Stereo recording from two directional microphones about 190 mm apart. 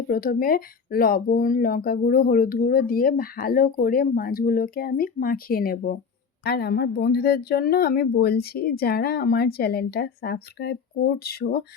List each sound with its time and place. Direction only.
0.1 s speech: 50° left (ahead or behind)